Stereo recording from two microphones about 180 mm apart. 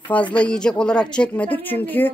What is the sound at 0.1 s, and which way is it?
A woman's voice, 10° left (ahead or behind).